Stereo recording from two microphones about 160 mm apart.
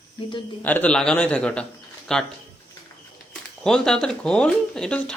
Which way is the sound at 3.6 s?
5° left (ahead or behind).